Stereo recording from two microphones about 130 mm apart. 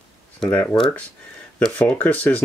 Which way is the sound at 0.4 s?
10° left (ahead or behind).